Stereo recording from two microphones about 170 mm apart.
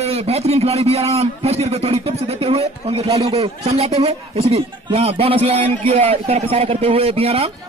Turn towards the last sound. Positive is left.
turn(degrees=-35)  # may be behind; listen again after turning